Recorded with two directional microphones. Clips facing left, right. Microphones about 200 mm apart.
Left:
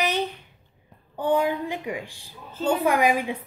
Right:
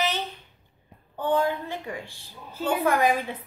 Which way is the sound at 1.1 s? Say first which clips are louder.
Left 2 dB; 15° left (ahead or behind).